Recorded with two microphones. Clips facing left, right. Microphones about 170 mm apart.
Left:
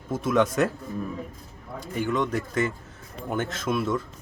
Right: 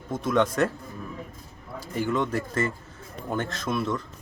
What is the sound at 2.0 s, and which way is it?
Speech, centre (ahead or behind).